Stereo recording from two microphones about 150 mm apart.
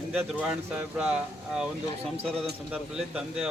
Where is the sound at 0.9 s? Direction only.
5° right (ahead or behind).